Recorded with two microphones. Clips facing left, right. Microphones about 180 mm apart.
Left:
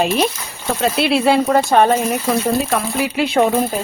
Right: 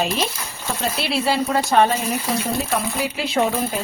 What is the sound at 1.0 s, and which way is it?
Speech, 60° left (ahead or behind).